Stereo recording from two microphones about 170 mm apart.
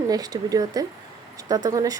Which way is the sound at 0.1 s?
20° right (ahead or behind).